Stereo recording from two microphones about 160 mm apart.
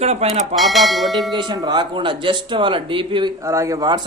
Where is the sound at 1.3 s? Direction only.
30° right (ahead or behind).